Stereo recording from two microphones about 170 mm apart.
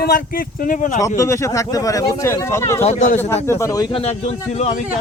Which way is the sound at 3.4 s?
15° left (ahead or behind).